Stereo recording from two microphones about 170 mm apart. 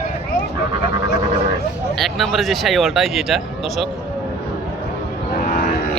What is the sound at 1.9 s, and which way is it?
Speech, centre (ahead or behind).